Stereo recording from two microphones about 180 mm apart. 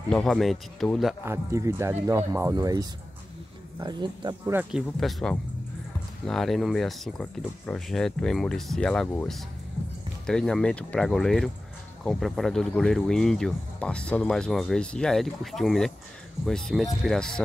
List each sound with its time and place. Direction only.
0.1 s speech: centre (ahead or behind)
1.2 s speech: 15° right (ahead or behind)
4.5 s speech: 5° right (ahead or behind)